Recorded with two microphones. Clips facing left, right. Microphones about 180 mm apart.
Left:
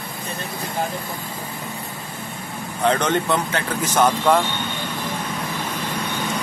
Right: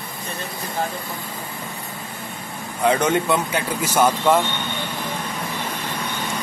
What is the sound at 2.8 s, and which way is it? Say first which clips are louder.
Speech: right 1 dB; 10° right (ahead or behind).